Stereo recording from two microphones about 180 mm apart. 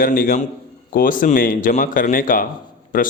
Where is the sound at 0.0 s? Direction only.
55° left (ahead or behind).